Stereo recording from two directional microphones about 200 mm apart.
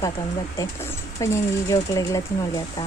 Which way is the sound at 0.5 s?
15° left (ahead or behind).